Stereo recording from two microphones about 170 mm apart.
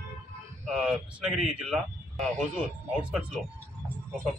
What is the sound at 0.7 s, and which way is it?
Speech, centre (ahead or behind).